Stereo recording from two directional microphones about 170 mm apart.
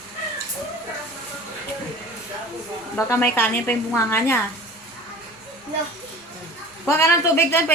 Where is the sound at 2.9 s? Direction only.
10° left (ahead or behind).